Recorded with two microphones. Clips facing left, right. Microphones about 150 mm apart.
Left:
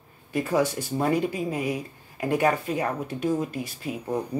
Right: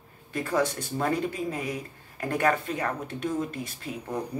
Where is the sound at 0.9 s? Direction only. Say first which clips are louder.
Left 3 dB; 15° left (ahead or behind).